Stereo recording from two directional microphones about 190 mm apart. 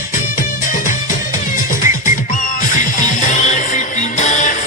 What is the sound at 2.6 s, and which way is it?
Music, 40° left (ahead or behind).